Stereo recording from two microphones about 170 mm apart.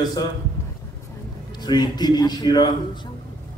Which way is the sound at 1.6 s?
25° left (ahead or behind).